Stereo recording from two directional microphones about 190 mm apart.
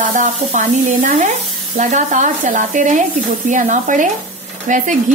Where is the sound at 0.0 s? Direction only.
40° right (ahead or behind).